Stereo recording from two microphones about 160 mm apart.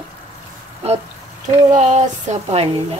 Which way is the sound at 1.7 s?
45° right (ahead or behind).